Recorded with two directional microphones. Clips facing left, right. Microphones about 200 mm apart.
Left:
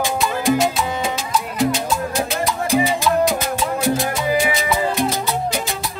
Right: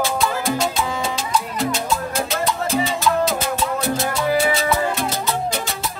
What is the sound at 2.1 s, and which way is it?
Music, 15° left (ahead or behind).